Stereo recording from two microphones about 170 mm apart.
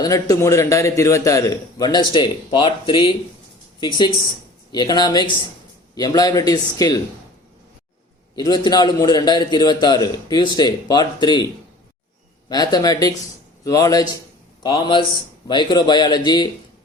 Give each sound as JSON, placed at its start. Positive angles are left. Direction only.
{"t": 0.0, "sound": "a man's voice", "side_deg": 20}
{"t": 8.4, "sound": "a man's voice", "side_deg": 25}
{"t": 12.5, "sound": "a man's voice", "side_deg": 25}